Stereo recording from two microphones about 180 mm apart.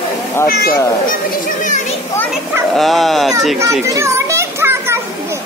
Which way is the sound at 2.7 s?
Centre (ahead or behind).